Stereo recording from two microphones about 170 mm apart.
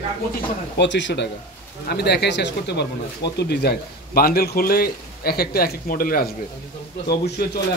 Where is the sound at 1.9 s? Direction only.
75° left (ahead or behind).